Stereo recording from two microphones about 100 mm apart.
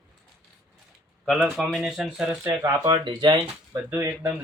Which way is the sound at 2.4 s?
30° right (ahead or behind).